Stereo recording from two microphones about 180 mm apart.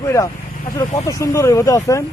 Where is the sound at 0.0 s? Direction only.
15° left (ahead or behind).